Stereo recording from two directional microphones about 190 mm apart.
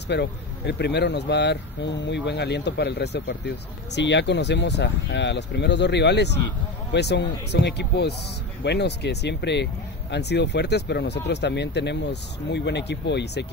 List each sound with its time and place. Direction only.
0.1 s speech: 65° left (ahead or behind)